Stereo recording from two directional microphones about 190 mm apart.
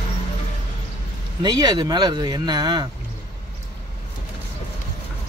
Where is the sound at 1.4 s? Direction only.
20° right (ahead or behind).